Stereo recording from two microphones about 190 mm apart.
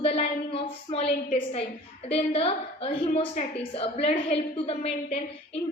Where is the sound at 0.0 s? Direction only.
30° left (ahead or behind).